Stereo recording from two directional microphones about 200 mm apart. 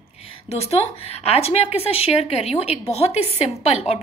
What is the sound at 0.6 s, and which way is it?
A woman's voice, 30° left (ahead or behind).